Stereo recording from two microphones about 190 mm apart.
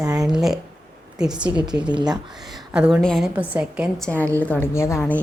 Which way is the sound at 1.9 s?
20° right (ahead or behind).